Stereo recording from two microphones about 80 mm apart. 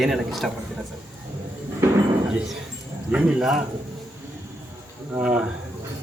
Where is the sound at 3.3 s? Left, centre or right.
Centre.